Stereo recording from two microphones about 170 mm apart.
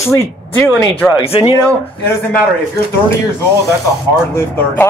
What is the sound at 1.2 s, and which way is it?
Speech, 35° left (ahead or behind).